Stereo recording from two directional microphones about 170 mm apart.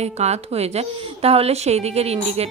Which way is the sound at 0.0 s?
40° right (ahead or behind).